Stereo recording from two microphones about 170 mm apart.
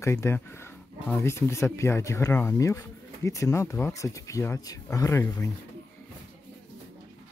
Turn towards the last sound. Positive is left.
turn(degrees=15)  # may be behind; listen again after turning